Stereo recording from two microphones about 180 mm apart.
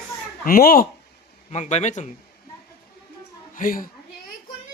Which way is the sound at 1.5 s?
40° left (ahead or behind).